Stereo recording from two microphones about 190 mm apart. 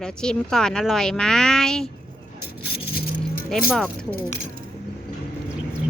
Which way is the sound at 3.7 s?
5° left (ahead or behind).